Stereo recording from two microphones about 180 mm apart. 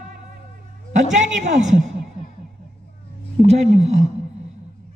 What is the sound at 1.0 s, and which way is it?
Speech, 40° right (ahead or behind).